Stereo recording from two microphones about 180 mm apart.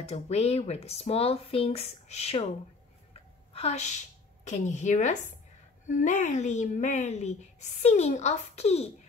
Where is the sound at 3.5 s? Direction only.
35° left (ahead or behind).